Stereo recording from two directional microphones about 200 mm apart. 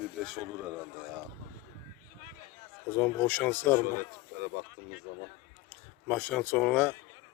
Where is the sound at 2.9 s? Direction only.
10° left (ahead or behind).